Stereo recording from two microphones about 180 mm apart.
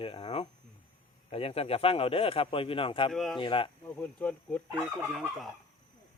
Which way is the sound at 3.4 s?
30° left (ahead or behind).